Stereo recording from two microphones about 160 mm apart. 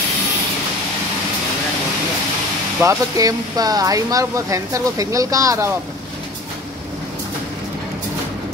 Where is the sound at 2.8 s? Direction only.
20° right (ahead or behind).